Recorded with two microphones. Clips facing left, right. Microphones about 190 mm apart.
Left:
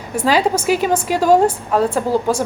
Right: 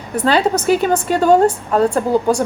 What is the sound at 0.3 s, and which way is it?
A woman's voice, 5° left (ahead or behind).